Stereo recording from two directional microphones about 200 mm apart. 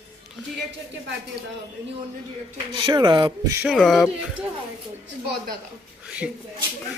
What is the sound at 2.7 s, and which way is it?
Speech, 25° right (ahead or behind).